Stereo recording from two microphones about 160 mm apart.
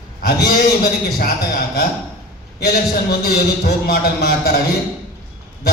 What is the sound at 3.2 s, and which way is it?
A man's voice, 70° left (ahead or behind).